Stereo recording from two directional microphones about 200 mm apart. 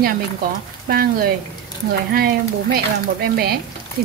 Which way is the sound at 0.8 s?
50° right (ahead or behind).